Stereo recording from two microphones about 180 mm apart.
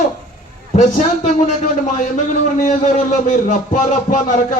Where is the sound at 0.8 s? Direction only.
40° left (ahead or behind).